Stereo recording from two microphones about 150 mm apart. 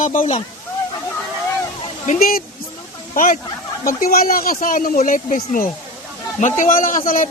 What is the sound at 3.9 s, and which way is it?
A man's voice, 75° left (ahead or behind).